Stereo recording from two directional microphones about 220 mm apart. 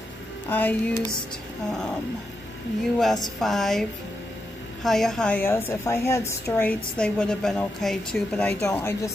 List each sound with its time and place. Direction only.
0.5 s a woman's voice: 10° left (ahead or behind)
3.0 s speech: centre (ahead or behind)
4.8 s a woman's voice: centre (ahead or behind)